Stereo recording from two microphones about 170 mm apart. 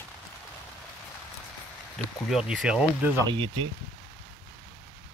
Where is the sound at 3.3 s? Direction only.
30° right (ahead or behind).